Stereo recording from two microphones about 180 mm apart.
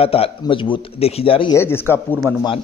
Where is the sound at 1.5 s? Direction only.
15° left (ahead or behind).